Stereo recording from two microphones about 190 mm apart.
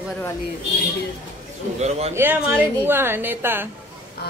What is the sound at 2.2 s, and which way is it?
A woman's voice, 10° right (ahead or behind).